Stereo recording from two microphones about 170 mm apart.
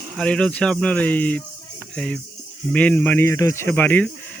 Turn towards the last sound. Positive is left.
turn(degrees=10)  # may be behind; listen again after turning